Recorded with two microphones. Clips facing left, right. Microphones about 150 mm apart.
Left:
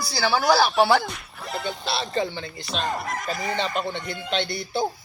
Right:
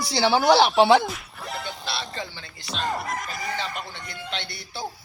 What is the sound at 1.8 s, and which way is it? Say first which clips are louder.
Speech: left 7 dB; 25° left (ahead or behind).